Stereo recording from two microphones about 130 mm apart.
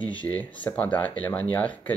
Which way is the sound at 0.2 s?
10° left (ahead or behind).